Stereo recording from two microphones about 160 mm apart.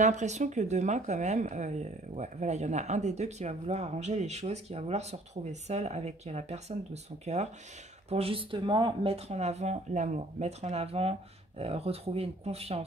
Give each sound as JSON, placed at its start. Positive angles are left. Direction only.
{"t": 0.0, "sound": "speech", "side_deg": -50}